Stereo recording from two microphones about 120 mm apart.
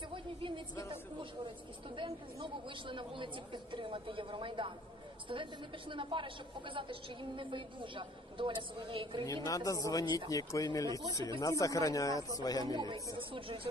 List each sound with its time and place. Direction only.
0.1 s a sound: 45° right (ahead or behind)
2.0 s a woman's voice: 45° right (ahead or behind)
9.2 s speech: 30° left (ahead or behind)
12.7 s speech: 35° right (ahead or behind)